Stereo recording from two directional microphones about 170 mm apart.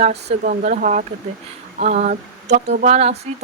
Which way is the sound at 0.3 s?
50° right (ahead or behind).